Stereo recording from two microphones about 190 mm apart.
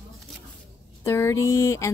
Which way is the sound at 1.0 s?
15° left (ahead or behind).